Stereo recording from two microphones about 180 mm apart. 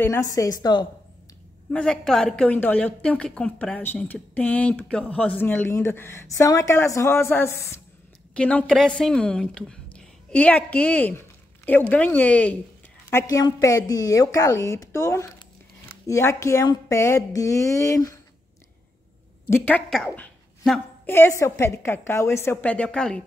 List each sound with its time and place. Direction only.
0.0 s a woman's voice: 15° left (ahead or behind)
1.7 s a woman's voice: 5° left (ahead or behind)
19.4 s a woman's voice: 10° left (ahead or behind)